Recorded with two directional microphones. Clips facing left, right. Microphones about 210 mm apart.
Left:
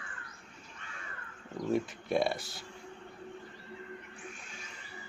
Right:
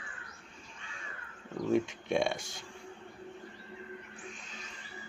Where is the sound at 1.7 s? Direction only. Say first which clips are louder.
Right 2 dB; centre (ahead or behind).